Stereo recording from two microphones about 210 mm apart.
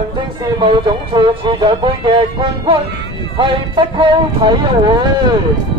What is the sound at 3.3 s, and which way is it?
Speech, 25° right (ahead or behind).